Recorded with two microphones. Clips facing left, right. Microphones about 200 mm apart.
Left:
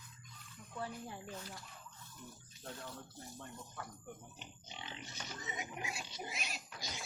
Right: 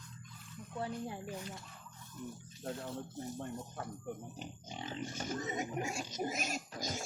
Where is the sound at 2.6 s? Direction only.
25° right (ahead or behind).